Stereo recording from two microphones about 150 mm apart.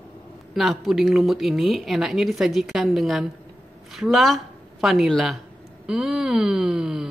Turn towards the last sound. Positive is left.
turn(degrees=-5)  # may be behind; listen again after turning